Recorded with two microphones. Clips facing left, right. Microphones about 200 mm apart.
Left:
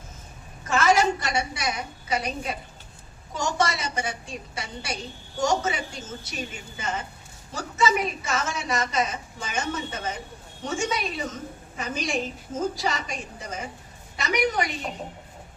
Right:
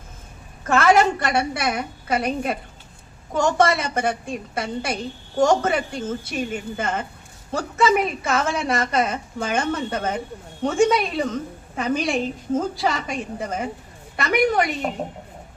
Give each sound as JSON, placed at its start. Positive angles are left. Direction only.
{"t": 0.7, "sound": "a woman's voice", "side_deg": -55}